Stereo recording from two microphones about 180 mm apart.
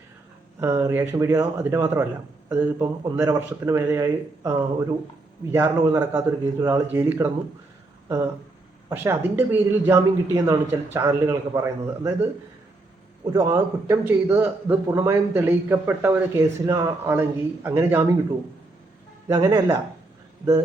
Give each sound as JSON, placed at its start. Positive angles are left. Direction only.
{"t": 0.6, "sound": "a man's voice", "side_deg": -15}
{"t": 8.9, "sound": "a man's voice", "side_deg": -10}
{"t": 13.3, "sound": "a man's voice", "side_deg": -15}
{"t": 19.3, "sound": "speech", "side_deg": -20}